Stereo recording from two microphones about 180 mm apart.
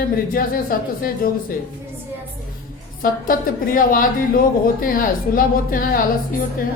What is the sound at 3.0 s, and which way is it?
A woman's voice, 50° left (ahead or behind).